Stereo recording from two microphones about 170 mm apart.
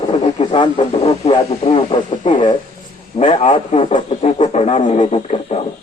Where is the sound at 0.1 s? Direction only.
40° left (ahead or behind).